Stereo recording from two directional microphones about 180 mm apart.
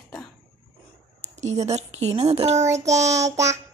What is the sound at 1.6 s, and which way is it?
A woman's voice, 35° right (ahead or behind).